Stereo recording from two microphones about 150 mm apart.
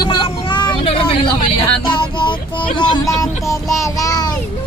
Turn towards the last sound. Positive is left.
turn(degrees=25)  # may be behind; listen again after turning